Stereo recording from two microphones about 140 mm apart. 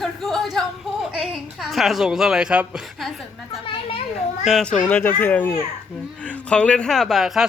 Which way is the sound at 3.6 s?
40° left (ahead or behind).